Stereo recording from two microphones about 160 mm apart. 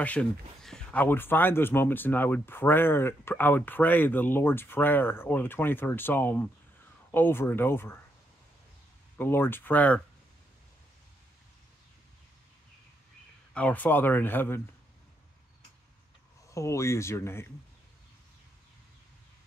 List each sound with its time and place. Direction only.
0.0 s speech: 5° left (ahead or behind)
9.1 s speech: 10° left (ahead or behind)
13.5 s speech: 10° left (ahead or behind)
16.4 s speech: 20° left (ahead or behind)